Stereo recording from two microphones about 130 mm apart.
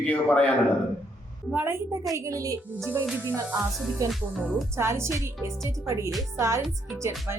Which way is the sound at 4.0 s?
25° right (ahead or behind).